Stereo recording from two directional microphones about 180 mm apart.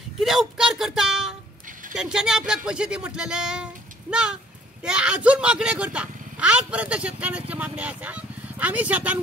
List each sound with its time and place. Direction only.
0.2 s speech: centre (ahead or behind)